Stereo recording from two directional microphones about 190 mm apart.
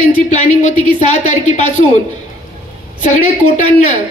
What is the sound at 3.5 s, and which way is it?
Speech, 40° left (ahead or behind).